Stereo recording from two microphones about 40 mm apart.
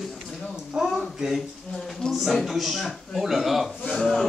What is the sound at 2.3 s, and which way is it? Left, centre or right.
A man's voice, centre.